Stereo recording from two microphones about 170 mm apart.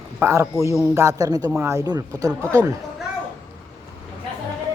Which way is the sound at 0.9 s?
20° right (ahead or behind).